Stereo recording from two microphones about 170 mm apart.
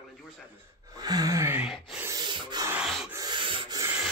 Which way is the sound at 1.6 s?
5° right (ahead or behind).